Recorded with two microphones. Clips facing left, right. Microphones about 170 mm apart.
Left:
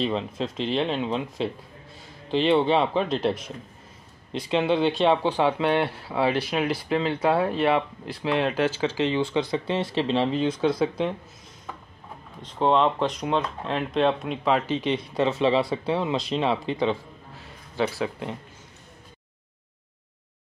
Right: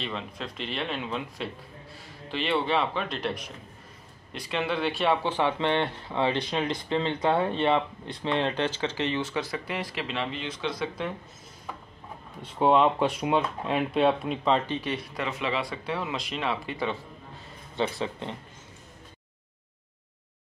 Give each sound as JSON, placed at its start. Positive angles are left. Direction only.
{"t": 0.0, "sound": "speech", "side_deg": 30}
{"t": 12.4, "sound": "speech", "side_deg": -10}
{"t": 14.8, "sound": "speech", "side_deg": 25}
{"t": 17.7, "sound": "speech", "side_deg": 5}